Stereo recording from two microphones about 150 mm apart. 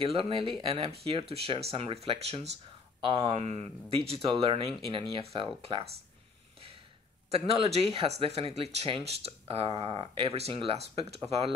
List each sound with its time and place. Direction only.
0.0 s speech: 35° right (ahead or behind)
7.2 s speech: 40° right (ahead or behind)